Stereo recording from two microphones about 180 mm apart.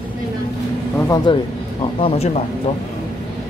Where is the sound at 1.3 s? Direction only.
30° left (ahead or behind).